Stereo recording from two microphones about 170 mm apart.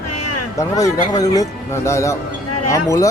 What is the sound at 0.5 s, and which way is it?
Speech, 20° left (ahead or behind).